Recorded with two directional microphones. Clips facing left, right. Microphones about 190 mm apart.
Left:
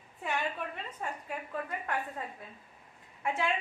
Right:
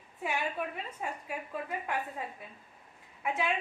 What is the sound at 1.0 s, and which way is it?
Speech, 10° right (ahead or behind).